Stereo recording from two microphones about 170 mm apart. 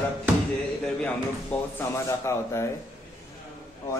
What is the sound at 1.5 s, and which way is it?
Speech, 10° left (ahead or behind).